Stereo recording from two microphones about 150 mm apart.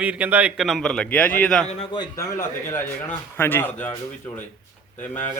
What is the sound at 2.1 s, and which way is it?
Speech, 15° left (ahead or behind).